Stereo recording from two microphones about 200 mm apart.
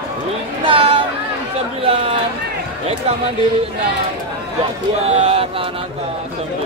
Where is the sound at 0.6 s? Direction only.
25° right (ahead or behind).